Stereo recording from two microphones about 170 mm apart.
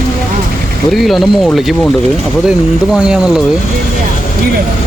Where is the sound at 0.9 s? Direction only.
Centre (ahead or behind).